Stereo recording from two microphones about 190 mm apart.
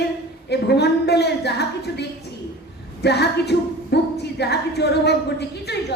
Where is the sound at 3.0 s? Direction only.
60° left (ahead or behind).